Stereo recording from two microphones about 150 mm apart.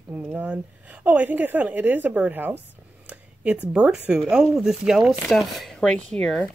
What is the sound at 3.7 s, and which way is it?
Speech, 10° right (ahead or behind).